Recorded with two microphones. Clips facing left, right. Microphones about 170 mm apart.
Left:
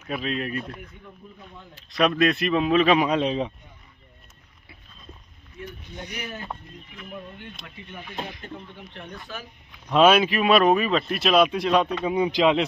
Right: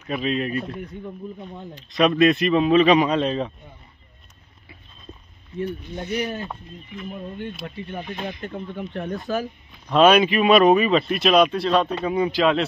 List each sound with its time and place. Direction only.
0.0 s a man's voice: centre (ahead or behind)
1.8 s a man's voice: centre (ahead or behind)
6.1 s speech: 35° right (ahead or behind)
7.6 s speech: 35° right (ahead or behind)
8.5 s speech: 45° right (ahead or behind)
9.8 s a man's voice: 5° left (ahead or behind)